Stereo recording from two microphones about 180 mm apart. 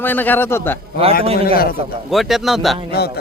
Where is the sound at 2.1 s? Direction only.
Centre (ahead or behind).